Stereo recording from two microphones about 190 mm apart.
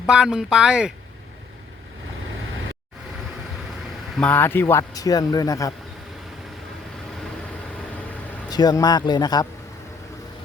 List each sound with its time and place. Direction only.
0.1 s speech: 5° right (ahead or behind)
4.2 s speech: 10° left (ahead or behind)
8.4 s speech: 20° left (ahead or behind)